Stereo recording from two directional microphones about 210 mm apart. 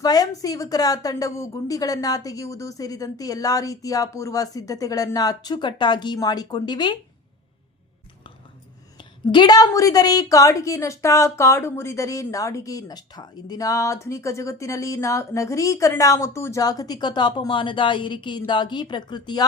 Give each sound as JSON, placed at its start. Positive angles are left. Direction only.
{"t": 0.0, "sound": "a woman's voice", "side_deg": 15}
{"t": 9.0, "sound": "a woman's voice", "side_deg": 20}